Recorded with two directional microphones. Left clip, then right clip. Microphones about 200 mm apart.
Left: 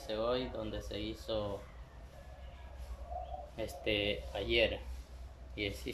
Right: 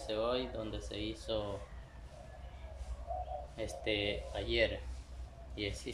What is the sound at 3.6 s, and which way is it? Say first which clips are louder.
Speech: left 1 dB; 5° left (ahead or behind).